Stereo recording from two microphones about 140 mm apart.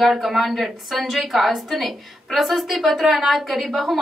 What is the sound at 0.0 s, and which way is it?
A woman's voice, centre (ahead or behind).